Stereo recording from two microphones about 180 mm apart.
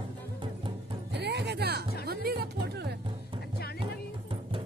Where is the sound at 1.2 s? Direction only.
65° right (ahead or behind).